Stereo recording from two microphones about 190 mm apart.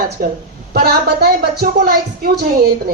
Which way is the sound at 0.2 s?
50° right (ahead or behind).